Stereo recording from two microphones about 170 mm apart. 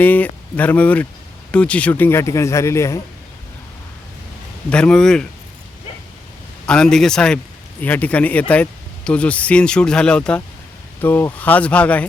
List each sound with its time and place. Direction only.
0.0 s a man's voice: 10° left (ahead or behind)
4.7 s speech: 5° left (ahead or behind)
6.7 s a man's voice: 5° left (ahead or behind)